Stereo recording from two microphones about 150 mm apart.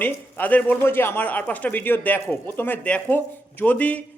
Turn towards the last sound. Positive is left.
turn(degrees=10)  # may be behind; listen again after turning